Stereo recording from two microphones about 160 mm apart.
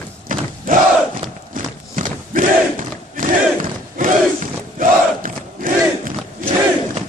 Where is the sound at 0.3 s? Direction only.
60° right (ahead or behind).